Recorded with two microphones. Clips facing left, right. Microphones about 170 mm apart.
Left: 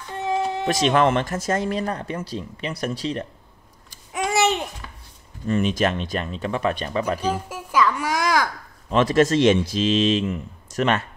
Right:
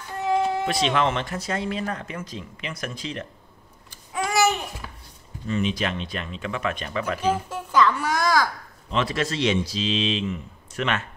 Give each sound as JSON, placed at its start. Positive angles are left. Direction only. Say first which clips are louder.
{"t": 0.7, "sound": "speech", "louder": "left 4 dB", "side_deg": 45}
{"t": 4.1, "sound": "babbling", "louder": "left 1 dB", "side_deg": 20}
{"t": 5.5, "sound": "speech", "louder": "left 4 dB", "side_deg": 45}
{"t": 7.4, "sound": "a child's voice", "louder": "left 1 dB", "side_deg": 10}
{"t": 8.9, "sound": "speech", "louder": "left 8 dB", "side_deg": 45}